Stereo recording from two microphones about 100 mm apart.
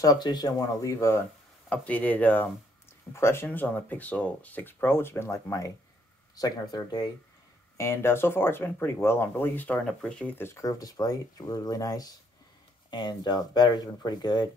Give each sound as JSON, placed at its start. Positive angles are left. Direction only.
{"t": 0.0, "sound": "speech", "side_deg": 40}
{"t": 0.9, "sound": "speech", "side_deg": 25}
{"t": 1.7, "sound": "speech", "side_deg": 15}
{"t": 6.3, "sound": "speech", "side_deg": 40}
{"t": 7.7, "sound": "speech", "side_deg": 25}
{"t": 9.8, "sound": "speech", "side_deg": 10}
{"t": 10.3, "sound": "speech", "side_deg": 25}
{"t": 10.6, "sound": "speech", "side_deg": 35}